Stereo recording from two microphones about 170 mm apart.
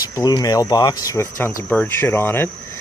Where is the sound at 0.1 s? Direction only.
25° left (ahead or behind).